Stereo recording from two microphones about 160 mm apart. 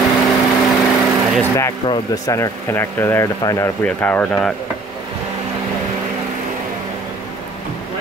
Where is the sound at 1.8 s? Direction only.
20° left (ahead or behind); by 4.5 s 5° left (ahead or behind).